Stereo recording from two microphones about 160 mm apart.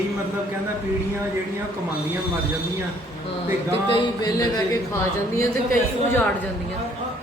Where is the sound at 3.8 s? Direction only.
25° left (ahead or behind).